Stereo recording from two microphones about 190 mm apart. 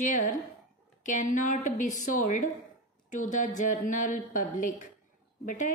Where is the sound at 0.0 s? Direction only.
40° left (ahead or behind).